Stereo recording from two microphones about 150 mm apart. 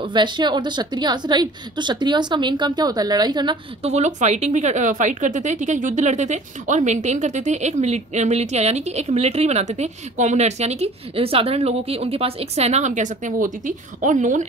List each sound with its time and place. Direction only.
0.0 s a woman's voice: 30° right (ahead or behind)
3.8 s speech: 50° right (ahead or behind)